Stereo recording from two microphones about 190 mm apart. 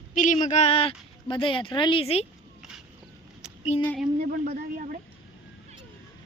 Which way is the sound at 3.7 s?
35° left (ahead or behind).